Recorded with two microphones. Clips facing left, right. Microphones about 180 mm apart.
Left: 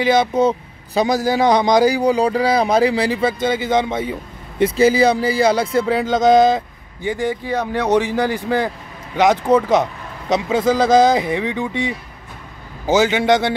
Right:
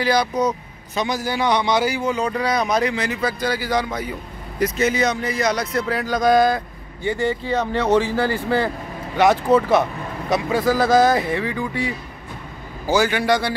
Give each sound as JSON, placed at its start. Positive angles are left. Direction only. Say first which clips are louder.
{"t": 0.0, "sound": "a man's voice", "louder": "left 4 dB", "side_deg": 25}